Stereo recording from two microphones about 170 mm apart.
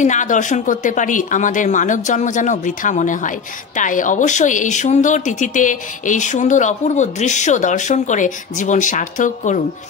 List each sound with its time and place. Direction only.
0.0 s speech: 45° left (ahead or behind)